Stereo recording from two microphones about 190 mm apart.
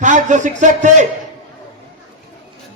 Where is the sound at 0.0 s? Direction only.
40° right (ahead or behind).